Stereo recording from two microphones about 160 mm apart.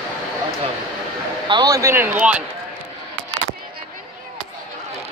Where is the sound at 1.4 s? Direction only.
25° right (ahead or behind); by 2.4 s 10° right (ahead or behind).